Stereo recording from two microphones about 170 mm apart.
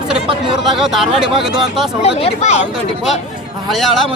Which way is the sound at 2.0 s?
35° left (ahead or behind).